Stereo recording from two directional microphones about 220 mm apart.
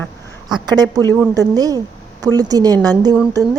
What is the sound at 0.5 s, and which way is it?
Speech, 20° right (ahead or behind).